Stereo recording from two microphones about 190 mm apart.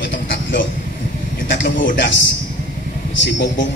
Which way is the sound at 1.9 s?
75° left (ahead or behind).